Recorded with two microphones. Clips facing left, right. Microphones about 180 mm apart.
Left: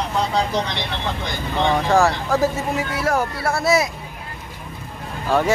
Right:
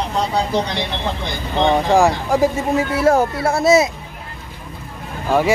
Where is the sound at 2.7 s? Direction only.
25° right (ahead or behind).